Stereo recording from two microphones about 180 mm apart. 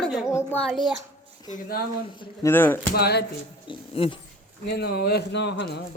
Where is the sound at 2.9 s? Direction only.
60° left (ahead or behind).